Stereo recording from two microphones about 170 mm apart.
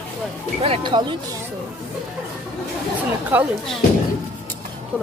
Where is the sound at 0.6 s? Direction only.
30° right (ahead or behind).